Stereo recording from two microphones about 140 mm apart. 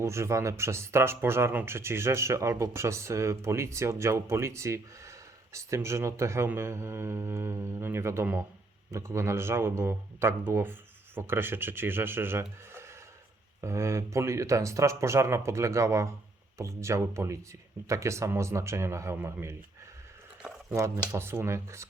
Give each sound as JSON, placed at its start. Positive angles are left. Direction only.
{"t": 0.0, "sound": "a man's voice", "side_deg": -20}
{"t": 20.7, "sound": "speech", "side_deg": -20}